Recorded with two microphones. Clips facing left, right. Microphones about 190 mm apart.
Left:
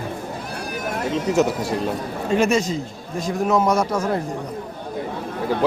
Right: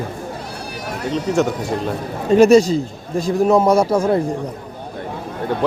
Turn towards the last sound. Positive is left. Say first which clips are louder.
# right 5 dB
turn(degrees=-30)  # may be behind; listen again after turning